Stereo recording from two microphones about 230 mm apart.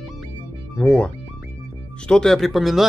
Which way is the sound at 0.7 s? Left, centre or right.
Centre.